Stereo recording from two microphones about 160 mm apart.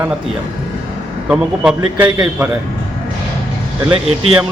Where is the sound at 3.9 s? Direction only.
35° right (ahead or behind).